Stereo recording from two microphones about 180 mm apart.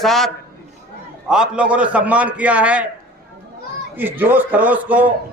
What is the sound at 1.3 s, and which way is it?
A man's voice, 5° right (ahead or behind).